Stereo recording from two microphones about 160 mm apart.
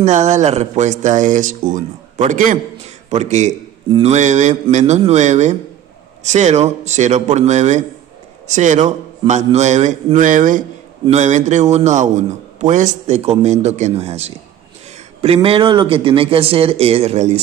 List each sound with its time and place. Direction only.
0.0 s a man's voice: 50° right (ahead or behind)